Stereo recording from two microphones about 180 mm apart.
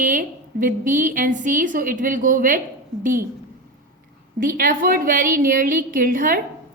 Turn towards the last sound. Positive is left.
turn(degrees=-50)  # may be behind; listen again after turning